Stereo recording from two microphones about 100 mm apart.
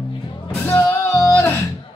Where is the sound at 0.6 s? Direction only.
20° left (ahead or behind).